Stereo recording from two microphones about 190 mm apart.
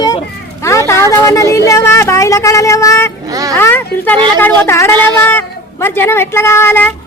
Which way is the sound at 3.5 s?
10° left (ahead or behind).